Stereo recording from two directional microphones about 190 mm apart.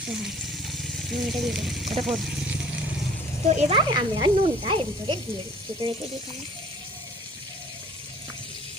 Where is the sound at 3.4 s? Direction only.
35° right (ahead or behind).